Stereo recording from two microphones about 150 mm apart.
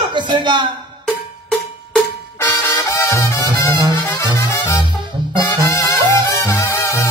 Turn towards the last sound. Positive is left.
turn(degrees=20)  # may be behind; listen again after turning